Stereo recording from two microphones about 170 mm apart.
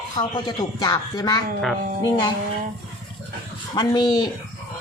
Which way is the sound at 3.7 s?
25° left (ahead or behind).